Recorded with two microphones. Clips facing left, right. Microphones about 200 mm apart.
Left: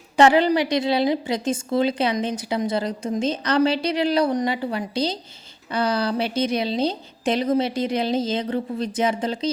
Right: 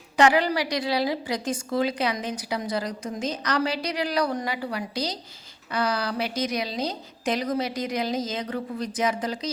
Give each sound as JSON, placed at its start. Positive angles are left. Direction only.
{"t": 0.2, "sound": "a woman's voice", "side_deg": 25}